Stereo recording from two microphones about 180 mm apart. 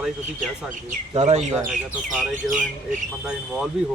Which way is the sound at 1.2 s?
35° right (ahead or behind).